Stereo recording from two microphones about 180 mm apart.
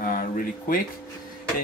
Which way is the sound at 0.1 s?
50° left (ahead or behind).